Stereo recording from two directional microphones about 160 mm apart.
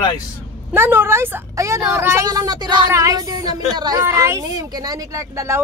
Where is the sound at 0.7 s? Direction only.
15° right (ahead or behind).